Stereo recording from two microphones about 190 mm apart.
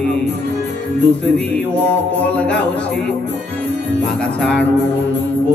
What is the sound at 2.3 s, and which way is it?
Speech, 5° left (ahead or behind).